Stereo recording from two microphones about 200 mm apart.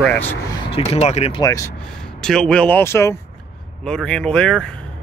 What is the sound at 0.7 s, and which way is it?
Speech, 30° left (ahead or behind).